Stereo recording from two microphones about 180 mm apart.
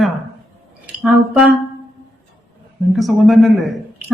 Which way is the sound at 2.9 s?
Centre (ahead or behind).